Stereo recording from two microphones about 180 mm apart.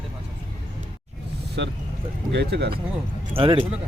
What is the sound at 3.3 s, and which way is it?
Speech, 30° right (ahead or behind).